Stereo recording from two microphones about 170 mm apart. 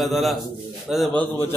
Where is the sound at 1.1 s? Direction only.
15° left (ahead or behind).